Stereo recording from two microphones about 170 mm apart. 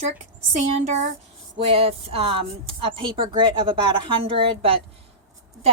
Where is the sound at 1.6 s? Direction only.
35° right (ahead or behind).